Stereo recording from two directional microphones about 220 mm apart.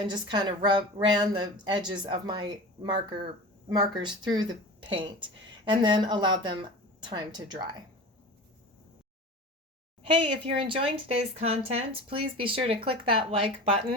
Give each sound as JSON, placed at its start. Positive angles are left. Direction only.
{"t": 0.1, "sound": "speech", "side_deg": -20}
{"t": 10.0, "sound": "speech", "side_deg": -20}